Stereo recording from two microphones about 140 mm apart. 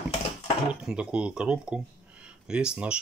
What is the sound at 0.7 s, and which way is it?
A man's voice, 5° right (ahead or behind).